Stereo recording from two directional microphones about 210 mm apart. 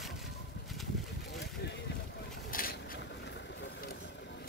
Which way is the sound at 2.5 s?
45° left (ahead or behind).